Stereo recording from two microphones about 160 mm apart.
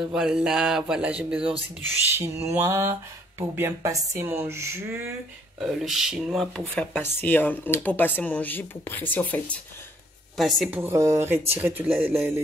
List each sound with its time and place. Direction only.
0.1 s speech: 5° right (ahead or behind)
5.6 s speech: centre (ahead or behind)
10.3 s speech: centre (ahead or behind)
10.7 s speech: 15° right (ahead or behind)